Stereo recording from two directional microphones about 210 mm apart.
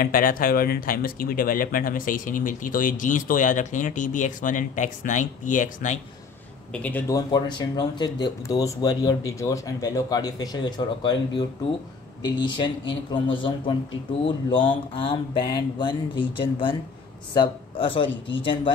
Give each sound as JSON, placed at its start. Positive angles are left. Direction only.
{"t": 0.0, "sound": "speech", "side_deg": 40}
{"t": 6.7, "sound": "speech", "side_deg": 5}